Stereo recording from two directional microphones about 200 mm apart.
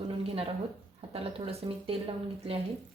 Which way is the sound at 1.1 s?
30° right (ahead or behind).